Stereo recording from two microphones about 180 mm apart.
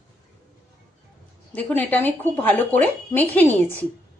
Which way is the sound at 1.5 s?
10° left (ahead or behind).